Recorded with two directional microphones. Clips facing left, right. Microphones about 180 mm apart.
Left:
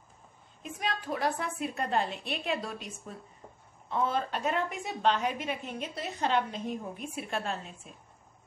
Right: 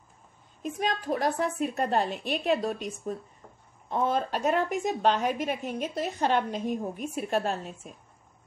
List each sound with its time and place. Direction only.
0.6 s a woman's voice: 40° right (ahead or behind)